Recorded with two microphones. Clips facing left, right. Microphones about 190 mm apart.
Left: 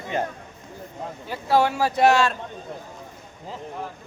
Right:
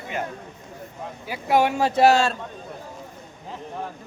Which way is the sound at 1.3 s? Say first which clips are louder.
Even; 15° right (ahead or behind).